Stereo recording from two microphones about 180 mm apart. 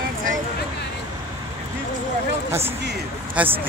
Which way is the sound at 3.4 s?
10° right (ahead or behind).